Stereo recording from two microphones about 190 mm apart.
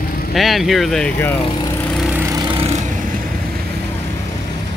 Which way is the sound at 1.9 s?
5° right (ahead or behind).